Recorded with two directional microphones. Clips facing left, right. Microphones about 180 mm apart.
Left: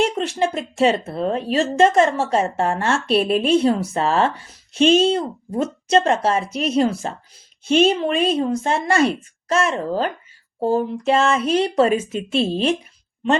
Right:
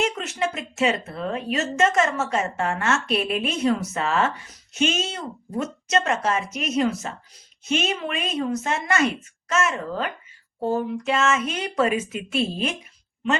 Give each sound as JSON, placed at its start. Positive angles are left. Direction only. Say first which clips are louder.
{"t": 0.0, "sound": "a woman's voice", "louder": "left 5 dB", "side_deg": 30}